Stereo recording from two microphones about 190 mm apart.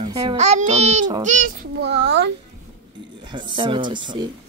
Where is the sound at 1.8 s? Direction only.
65° right (ahead or behind).